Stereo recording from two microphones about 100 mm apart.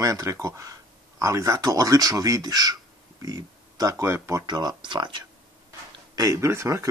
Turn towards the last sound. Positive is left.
turn(degrees=-30)  # may be behind; listen again after turning